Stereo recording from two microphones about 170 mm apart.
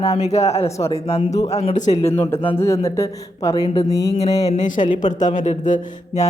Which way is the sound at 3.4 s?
25° left (ahead or behind).